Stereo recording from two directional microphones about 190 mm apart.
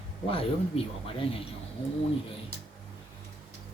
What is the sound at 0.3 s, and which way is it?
Speech, 30° left (ahead or behind).